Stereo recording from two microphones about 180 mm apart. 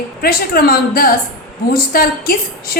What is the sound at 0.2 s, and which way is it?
A woman's voice, 55° left (ahead or behind).